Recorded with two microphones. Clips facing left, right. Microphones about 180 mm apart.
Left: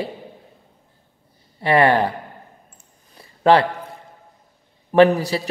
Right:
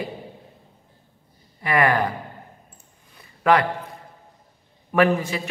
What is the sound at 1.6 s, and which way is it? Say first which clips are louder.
Speech: left 4 dB; 30° left (ahead or behind).